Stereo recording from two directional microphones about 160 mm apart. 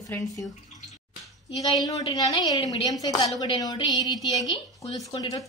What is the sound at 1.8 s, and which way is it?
A woman's voice, 25° left (ahead or behind).